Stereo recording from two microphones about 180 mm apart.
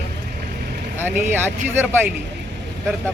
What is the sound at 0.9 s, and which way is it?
Speech, 10° right (ahead or behind).